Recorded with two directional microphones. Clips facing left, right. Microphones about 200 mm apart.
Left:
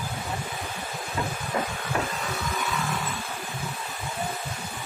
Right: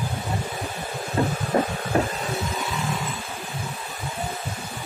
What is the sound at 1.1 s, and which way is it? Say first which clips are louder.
Heart sounds: right 7 dB; 40° right (ahead or behind).